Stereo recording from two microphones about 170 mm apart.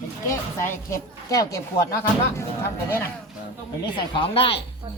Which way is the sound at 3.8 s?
30° left (ahead or behind).